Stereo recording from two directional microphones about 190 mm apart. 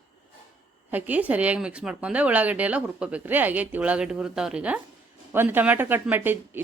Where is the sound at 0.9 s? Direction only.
10° right (ahead or behind).